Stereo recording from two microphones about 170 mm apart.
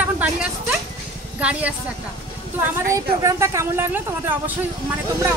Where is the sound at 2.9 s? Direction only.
20° right (ahead or behind).